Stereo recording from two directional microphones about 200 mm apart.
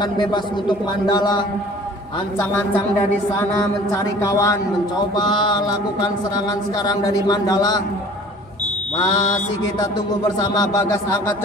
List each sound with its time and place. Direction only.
0.0 s a man's voice: 20° left (ahead or behind)
2.3 s speech: 10° left (ahead or behind)
3.9 s a man's voice: 15° left (ahead or behind)
7.1 s a man's voice: 20° left (ahead or behind)
10.4 s speech: 20° left (ahead or behind)